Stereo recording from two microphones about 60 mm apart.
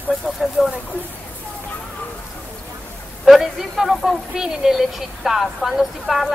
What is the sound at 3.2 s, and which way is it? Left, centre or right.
Speech, centre.